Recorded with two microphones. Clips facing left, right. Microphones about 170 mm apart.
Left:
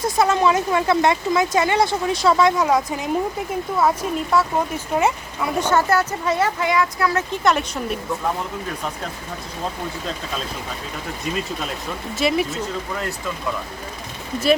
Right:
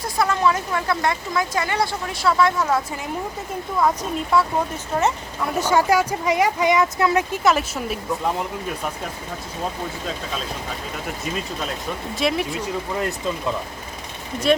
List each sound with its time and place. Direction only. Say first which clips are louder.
0.0 s speech: left 3 dB; 20° left (ahead or behind)
3.8 s speech: left 1 dB; 5° left (ahead or behind)
5.5 s speech: right 1 dB; 10° right (ahead or behind)
7.4 s speech: even; centre (ahead or behind)
12.1 s speech: left 3 dB; centre (ahead or behind)
12.5 s speech: right 1 dB; 15° right (ahead or behind)